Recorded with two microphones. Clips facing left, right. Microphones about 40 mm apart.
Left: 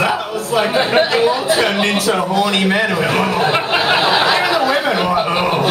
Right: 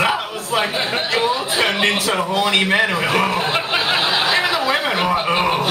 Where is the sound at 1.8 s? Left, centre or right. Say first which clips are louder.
Left 2 dB; centre.